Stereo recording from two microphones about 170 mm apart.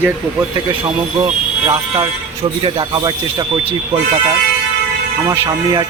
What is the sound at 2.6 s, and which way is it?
Speech, 30° right (ahead or behind).